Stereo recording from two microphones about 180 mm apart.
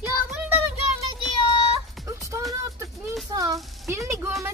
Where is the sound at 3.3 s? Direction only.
20° right (ahead or behind).